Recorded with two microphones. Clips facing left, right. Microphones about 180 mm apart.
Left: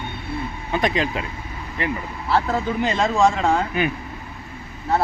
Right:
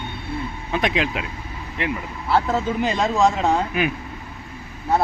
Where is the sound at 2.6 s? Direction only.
15° right (ahead or behind).